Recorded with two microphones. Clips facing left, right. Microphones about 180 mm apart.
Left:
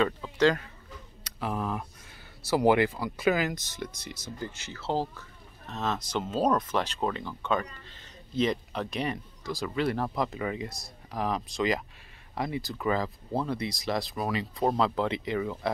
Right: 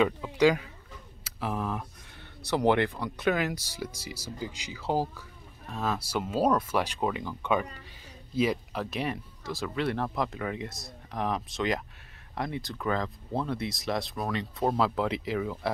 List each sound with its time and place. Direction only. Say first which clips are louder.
0.0 s speech: right 1 dB; 10° right (ahead or behind)
3.5 s speech: right 1 dB; 10° right (ahead or behind)